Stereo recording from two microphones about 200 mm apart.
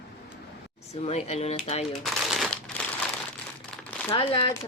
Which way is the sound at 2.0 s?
Centre (ahead or behind).